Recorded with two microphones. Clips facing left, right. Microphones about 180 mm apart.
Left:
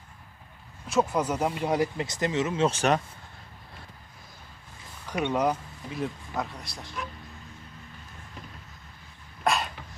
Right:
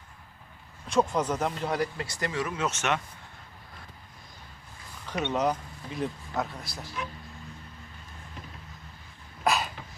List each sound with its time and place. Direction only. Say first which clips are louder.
0.9 s speech: even; 5° left (ahead or behind); by 3.0 s 35° left (ahead or behind)
5.0 s speech: left 1 dB; 10° left (ahead or behind)
9.4 s dog: even; centre (ahead or behind)